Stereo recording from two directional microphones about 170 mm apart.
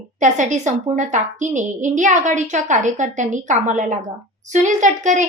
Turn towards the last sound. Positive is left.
turn(degrees=-45)  # may be behind; listen again after turning